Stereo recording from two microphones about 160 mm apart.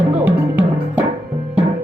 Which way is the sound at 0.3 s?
10° right (ahead or behind).